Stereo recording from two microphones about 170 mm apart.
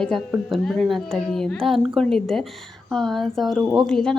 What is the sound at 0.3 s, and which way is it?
A woman's voice, centre (ahead or behind).